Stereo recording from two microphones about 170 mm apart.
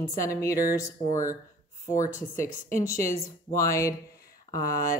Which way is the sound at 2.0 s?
50° left (ahead or behind).